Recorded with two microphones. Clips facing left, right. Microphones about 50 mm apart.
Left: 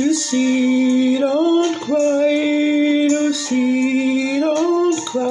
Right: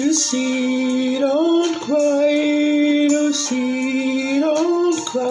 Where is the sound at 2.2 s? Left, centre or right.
Centre.